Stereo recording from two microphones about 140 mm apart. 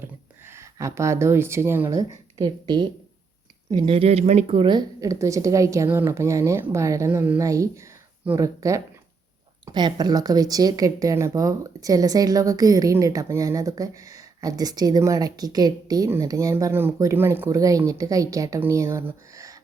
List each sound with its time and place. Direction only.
0.0 s speech: 20° right (ahead or behind)